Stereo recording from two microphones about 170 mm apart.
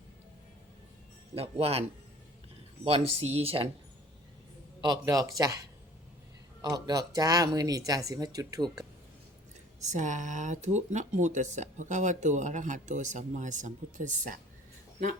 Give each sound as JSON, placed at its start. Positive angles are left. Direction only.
{"t": 1.4, "sound": "speech", "side_deg": -35}
{"t": 2.8, "sound": "speech", "side_deg": -35}
{"t": 4.8, "sound": "speech", "side_deg": -25}
{"t": 6.6, "sound": "speech", "side_deg": -25}
{"t": 9.8, "sound": "speech", "side_deg": -45}